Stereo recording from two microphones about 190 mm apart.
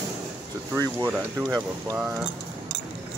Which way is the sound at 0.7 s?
20° right (ahead or behind).